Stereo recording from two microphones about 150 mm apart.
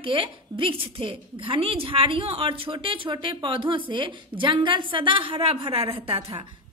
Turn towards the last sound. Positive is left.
turn(degrees=-35)  # may be behind; listen again after turning